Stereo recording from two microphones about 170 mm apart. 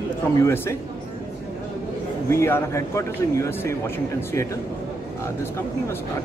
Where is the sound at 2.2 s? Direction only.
15° left (ahead or behind).